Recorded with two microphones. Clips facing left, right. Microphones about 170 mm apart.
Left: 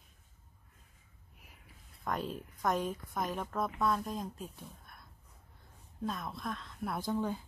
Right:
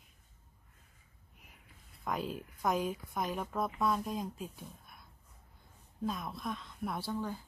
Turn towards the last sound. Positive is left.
turn(degrees=20)  # may be behind; listen again after turning